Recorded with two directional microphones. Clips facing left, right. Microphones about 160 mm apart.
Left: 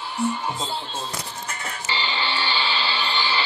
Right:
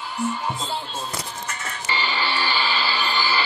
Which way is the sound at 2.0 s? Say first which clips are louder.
Right 2 dB; 20° left (ahead or behind).